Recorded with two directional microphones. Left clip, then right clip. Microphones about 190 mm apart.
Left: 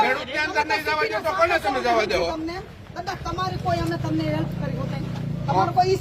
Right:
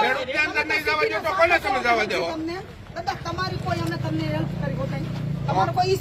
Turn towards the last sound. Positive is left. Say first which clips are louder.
# left 2 dB
turn(degrees=25)  # may be behind; listen again after turning